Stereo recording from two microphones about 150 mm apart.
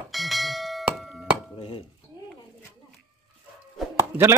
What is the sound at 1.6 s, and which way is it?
Dishes, 35° left (ahead or behind).